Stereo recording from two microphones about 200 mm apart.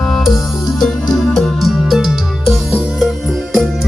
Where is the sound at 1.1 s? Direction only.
Centre (ahead or behind).